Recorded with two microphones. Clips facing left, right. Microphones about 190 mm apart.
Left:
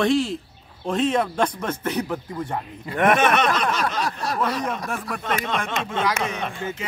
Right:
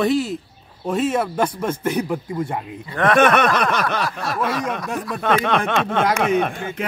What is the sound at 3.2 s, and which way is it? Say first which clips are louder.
Speech: right 4 dB; 55° right (ahead or behind).